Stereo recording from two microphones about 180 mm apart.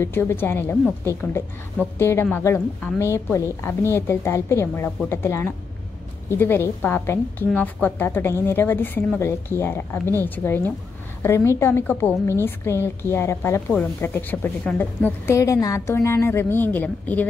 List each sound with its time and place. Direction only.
0.0 s a woman's voice: 15° left (ahead or behind)